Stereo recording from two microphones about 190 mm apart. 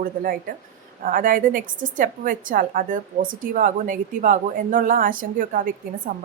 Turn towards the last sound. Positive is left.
turn(degrees=-45)  # may be behind; listen again after turning